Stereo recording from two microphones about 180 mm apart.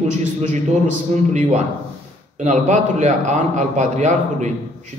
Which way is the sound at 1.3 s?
40° right (ahead or behind).